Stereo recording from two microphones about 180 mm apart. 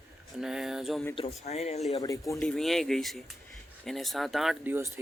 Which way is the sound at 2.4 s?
5° left (ahead or behind).